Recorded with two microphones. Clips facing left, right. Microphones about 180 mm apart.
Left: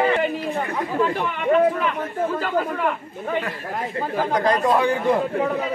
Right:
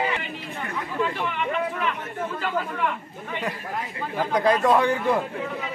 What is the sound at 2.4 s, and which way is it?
Speech, 45° left (ahead or behind).